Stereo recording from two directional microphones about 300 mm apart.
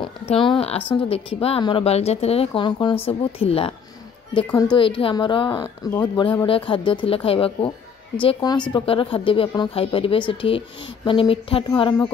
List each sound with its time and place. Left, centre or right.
0.0 s speech: centre